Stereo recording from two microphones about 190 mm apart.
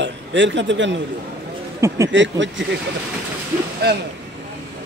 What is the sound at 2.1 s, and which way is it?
Speech, 70° right (ahead or behind).